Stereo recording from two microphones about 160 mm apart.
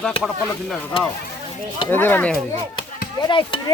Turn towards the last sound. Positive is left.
turn(degrees=30)  # may be behind; listen again after turning